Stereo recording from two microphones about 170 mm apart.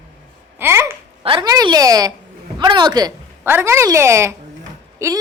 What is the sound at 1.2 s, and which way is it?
A woman's voice, 25° right (ahead or behind).